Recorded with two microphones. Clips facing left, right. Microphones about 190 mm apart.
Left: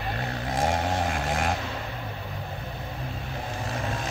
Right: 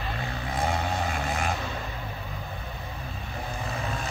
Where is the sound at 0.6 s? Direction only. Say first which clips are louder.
Left 2 dB; 45° left (ahead or behind).